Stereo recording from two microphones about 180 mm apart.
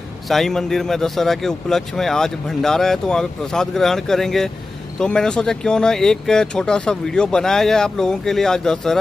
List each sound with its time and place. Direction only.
0.3 s speech: centre (ahead or behind)